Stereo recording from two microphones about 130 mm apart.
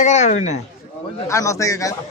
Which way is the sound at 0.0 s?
65° left (ahead or behind).